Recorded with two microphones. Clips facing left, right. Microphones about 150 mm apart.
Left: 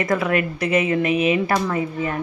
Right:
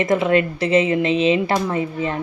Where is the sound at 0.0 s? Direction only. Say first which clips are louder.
Right 4 dB; 25° right (ahead or behind).